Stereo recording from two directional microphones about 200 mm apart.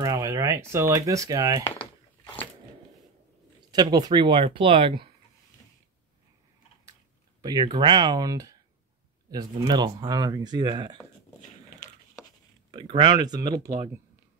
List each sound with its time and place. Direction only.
0.0 s speech: 20° right (ahead or behind)
3.7 s speech: 20° right (ahead or behind)
7.4 s speech: 20° right (ahead or behind)
12.2 s chopping: 15° left (ahead or behind)
12.7 s speech: 20° right (ahead or behind)